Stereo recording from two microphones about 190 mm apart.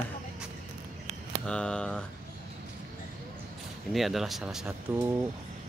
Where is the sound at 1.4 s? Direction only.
5° left (ahead or behind).